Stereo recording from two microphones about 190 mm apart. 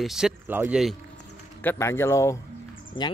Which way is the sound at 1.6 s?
10° left (ahead or behind).